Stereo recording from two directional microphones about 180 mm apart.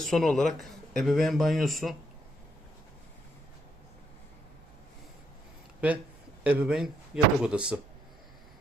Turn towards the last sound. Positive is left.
turn(degrees=-5)  # may be behind; listen again after turning